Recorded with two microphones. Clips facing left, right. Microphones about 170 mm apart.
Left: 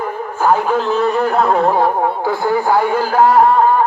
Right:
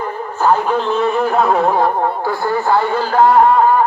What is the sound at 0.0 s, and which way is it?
A man's voice, 10° left (ahead or behind).